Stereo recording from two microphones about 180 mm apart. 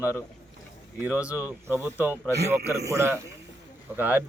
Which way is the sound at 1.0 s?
10° right (ahead or behind).